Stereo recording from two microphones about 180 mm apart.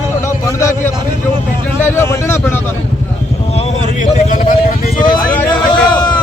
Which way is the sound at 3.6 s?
45° left (ahead or behind).